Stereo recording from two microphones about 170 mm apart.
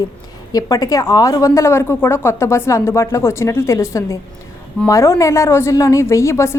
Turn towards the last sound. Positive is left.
turn(degrees=15)  # may be behind; listen again after turning